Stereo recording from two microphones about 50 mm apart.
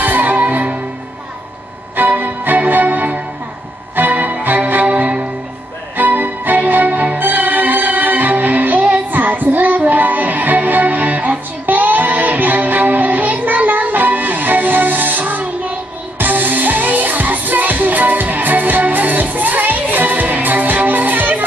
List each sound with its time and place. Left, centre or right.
0.0 s music: right
2.0 s music: right